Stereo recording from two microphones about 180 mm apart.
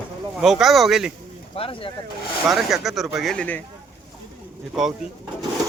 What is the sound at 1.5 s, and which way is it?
Speech, 30° left (ahead or behind).